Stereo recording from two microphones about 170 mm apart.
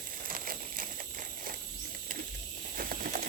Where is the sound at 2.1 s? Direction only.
50° right (ahead or behind).